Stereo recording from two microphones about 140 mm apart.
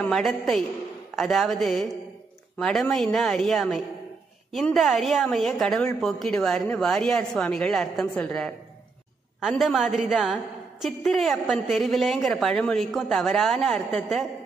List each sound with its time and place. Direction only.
0.0 s a woman's voice: centre (ahead or behind)